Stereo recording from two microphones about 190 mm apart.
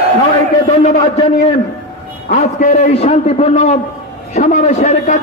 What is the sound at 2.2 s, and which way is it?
A man's voice, 40° left (ahead or behind).